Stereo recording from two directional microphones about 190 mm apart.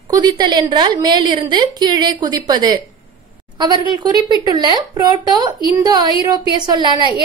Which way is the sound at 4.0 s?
25° right (ahead or behind).